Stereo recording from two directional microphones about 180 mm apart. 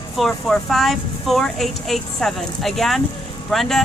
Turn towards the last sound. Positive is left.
turn(degrees=0)  # may be behind; listen again after turning